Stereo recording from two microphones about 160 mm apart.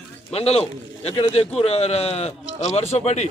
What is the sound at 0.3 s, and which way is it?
Speech, 40° left (ahead or behind).